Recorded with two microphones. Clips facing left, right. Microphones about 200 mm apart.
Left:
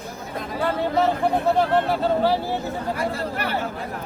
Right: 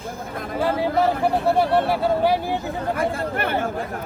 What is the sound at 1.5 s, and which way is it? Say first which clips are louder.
Speech: right 1 dB; 10° right (ahead or behind).